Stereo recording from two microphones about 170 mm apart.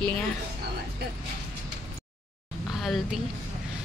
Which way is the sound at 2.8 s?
Centre (ahead or behind).